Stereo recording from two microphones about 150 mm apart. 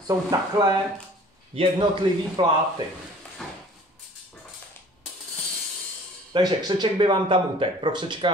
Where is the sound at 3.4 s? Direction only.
5° left (ahead or behind).